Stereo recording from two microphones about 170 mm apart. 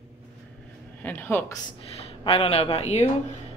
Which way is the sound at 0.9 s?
10° left (ahead or behind).